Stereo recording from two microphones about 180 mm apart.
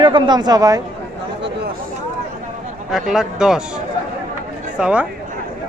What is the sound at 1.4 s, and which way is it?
Chatter, 75° right (ahead or behind).